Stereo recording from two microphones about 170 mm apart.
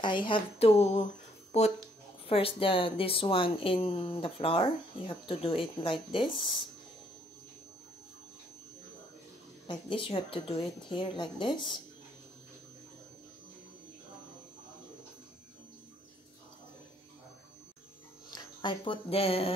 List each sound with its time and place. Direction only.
0.0 s speech: 30° left (ahead or behind)
9.7 s a woman's voice: 30° left (ahead or behind)
18.3 s speech: 25° left (ahead or behind)